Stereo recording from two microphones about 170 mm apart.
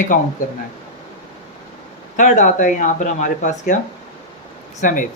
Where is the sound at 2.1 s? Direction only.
45° left (ahead or behind).